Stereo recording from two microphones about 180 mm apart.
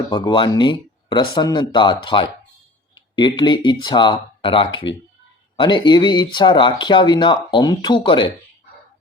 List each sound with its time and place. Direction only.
0.1 s speech: 25° left (ahead or behind)